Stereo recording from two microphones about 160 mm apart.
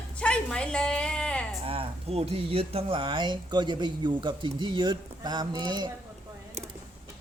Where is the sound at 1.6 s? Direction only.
35° right (ahead or behind).